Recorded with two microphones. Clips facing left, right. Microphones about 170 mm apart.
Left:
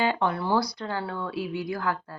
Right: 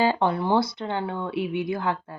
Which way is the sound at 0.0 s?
30° right (ahead or behind).